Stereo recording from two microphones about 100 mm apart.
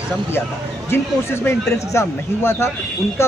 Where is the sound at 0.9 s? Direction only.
20° left (ahead or behind).